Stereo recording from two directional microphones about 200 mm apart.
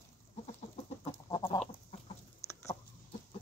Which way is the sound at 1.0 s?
20° left (ahead or behind).